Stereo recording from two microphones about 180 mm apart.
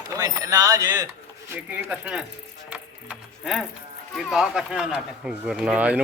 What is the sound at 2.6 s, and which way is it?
Music, 5° right (ahead or behind).